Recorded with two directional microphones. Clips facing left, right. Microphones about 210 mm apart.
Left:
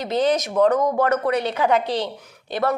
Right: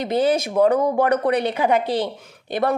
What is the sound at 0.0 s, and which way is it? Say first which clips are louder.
A woman's voice: right 1 dB; 10° right (ahead or behind).